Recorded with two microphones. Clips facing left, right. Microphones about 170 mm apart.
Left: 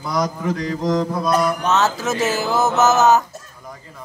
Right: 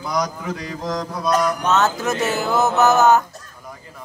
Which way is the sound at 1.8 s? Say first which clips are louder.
Even; centre (ahead or behind).